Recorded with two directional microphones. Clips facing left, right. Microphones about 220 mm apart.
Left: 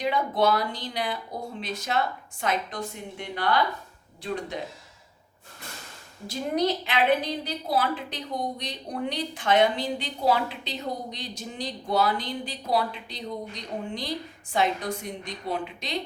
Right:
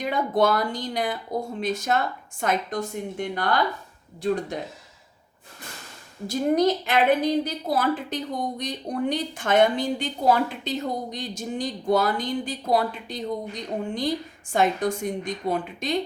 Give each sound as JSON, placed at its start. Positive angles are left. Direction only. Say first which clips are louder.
{"t": 0.0, "sound": "a woman's voice", "louder": "right 2 dB", "side_deg": -50}
{"t": 6.2, "sound": "a woman's voice", "louder": "right 5 dB", "side_deg": -45}